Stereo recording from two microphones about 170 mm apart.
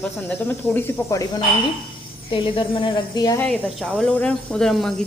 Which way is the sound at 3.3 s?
5° left (ahead or behind).